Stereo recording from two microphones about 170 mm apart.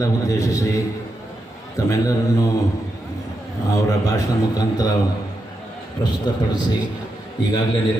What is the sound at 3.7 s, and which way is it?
A man's voice, 20° left (ahead or behind).